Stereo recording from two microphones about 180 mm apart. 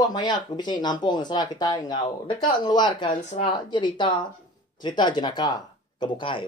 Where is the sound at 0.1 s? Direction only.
25° left (ahead or behind).